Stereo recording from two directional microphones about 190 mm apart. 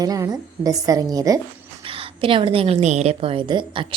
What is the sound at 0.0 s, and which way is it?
A woman's voice, 20° right (ahead or behind).